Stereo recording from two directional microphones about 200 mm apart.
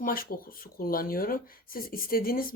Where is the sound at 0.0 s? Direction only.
45° left (ahead or behind).